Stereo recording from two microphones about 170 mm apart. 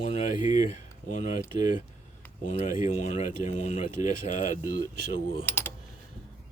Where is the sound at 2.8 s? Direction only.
45° left (ahead or behind).